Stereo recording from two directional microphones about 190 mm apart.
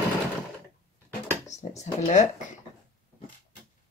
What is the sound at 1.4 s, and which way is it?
Speech, 35° left (ahead or behind).